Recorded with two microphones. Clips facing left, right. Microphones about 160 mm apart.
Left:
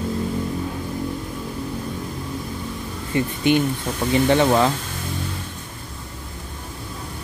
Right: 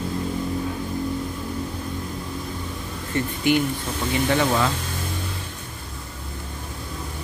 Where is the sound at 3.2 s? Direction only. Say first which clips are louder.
Left 2 dB; 20° left (ahead or behind).